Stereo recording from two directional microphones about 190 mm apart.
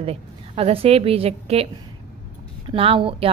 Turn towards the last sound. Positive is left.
turn(degrees=-30)  # may be behind; listen again after turning